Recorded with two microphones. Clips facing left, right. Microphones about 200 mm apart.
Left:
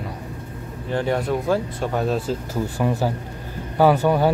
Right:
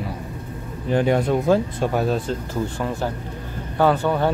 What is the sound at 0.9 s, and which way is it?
Speech, 15° right (ahead or behind).